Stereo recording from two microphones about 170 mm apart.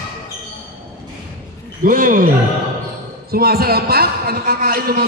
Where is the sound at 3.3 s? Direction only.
65° right (ahead or behind).